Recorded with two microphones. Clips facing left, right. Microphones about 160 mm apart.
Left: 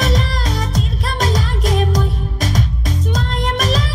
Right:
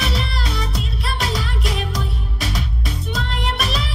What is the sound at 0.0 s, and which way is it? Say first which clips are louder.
Music: left 5 dB; 45° left (ahead or behind).